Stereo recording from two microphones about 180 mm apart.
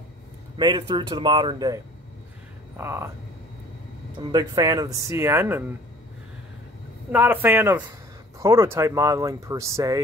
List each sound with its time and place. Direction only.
0.6 s speech: 25° right (ahead or behind)
2.8 s speech: 15° right (ahead or behind)
4.2 s speech: 20° right (ahead or behind)
7.1 s speech: 10° right (ahead or behind)